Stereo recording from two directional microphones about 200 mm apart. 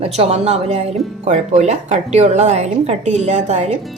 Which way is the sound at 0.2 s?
30° right (ahead or behind).